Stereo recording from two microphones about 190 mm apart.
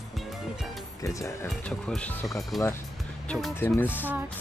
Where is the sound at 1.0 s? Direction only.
15° left (ahead or behind).